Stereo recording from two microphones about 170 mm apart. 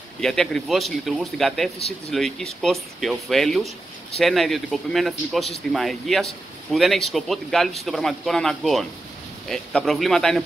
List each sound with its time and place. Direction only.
0.2 s a man's voice: 5° left (ahead or behind)